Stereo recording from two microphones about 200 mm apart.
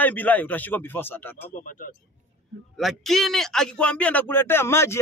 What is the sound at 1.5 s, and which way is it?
Speech, 45° left (ahead or behind).